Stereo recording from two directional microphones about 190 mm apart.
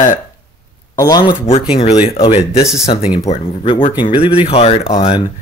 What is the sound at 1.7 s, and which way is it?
Speech, 35° left (ahead or behind).